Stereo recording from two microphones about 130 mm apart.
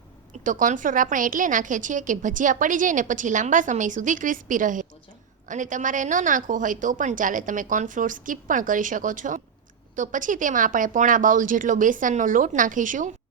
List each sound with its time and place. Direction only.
0.4 s a woman's voice: 85° right
9.9 s a woman's voice: 75° right (ahead or behind)